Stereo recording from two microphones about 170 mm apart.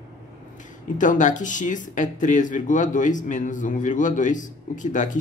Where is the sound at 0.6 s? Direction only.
50° left (ahead or behind).